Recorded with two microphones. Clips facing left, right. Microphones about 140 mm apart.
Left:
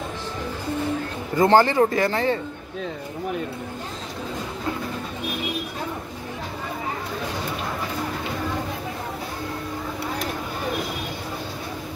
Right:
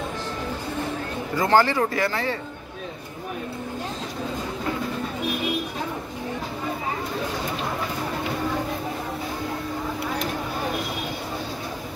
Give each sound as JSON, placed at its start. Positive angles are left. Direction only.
{"t": 1.4, "sound": "speech", "side_deg": 25}